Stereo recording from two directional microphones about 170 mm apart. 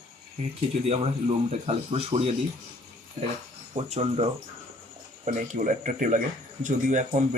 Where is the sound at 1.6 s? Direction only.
35° right (ahead or behind).